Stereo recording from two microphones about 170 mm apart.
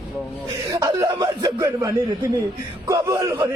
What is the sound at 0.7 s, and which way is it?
A man's voice, 20° right (ahead or behind).